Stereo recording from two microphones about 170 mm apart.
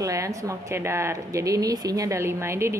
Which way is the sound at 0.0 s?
20° right (ahead or behind).